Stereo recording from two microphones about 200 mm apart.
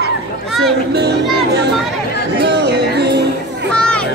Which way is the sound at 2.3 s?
60° right (ahead or behind).